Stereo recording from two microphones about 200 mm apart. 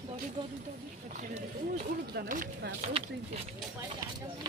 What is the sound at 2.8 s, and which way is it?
Speech, 30° right (ahead or behind).